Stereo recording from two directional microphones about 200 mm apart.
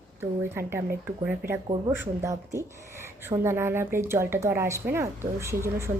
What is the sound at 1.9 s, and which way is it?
Speech, 15° right (ahead or behind).